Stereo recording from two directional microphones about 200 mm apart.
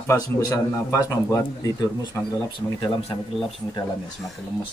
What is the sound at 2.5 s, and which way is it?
Speech, 25° left (ahead or behind).